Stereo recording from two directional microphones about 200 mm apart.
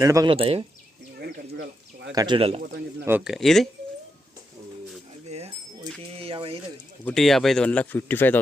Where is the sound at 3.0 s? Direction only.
5° right (ahead or behind).